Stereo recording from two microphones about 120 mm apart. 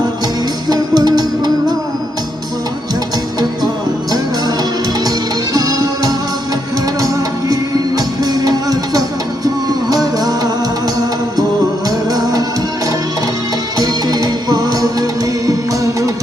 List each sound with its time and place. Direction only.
0.7 s music: 35° right (ahead or behind)
5.5 s music: 30° right (ahead or behind)
11.9 s music: 30° right (ahead or behind)
13.7 s music: 30° right (ahead or behind)